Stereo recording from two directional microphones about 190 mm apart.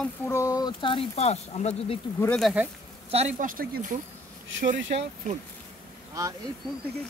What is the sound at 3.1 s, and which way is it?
Speech, 35° right (ahead or behind).